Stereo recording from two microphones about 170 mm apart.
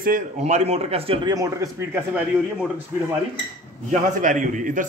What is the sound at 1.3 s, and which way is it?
Speech, 20° right (ahead or behind).